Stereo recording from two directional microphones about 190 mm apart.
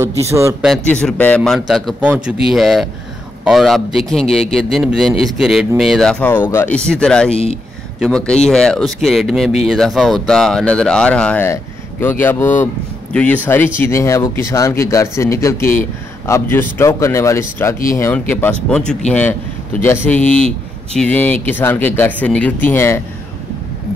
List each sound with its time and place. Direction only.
0.3 s a man's voice: 15° right (ahead or behind)
1.0 s speech: 5° left (ahead or behind)